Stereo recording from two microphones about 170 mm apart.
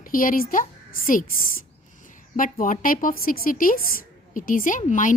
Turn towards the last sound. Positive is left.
turn(degrees=50)  # may be behind; listen again after turning